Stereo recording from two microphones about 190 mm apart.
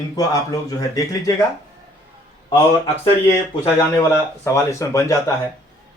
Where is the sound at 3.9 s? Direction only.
15° left (ahead or behind).